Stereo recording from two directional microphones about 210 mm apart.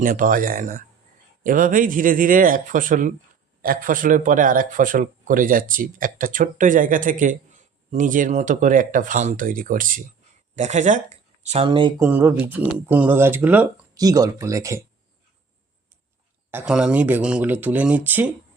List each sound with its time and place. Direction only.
0.0 s speech: 40° right (ahead or behind); by 12.0 s 20° right (ahead or behind)
12.0 s speech: 10° right (ahead or behind)
16.5 s speech: 5° right (ahead or behind)